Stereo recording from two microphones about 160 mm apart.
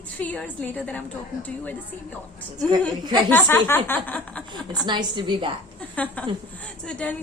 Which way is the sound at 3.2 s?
10° left (ahead or behind).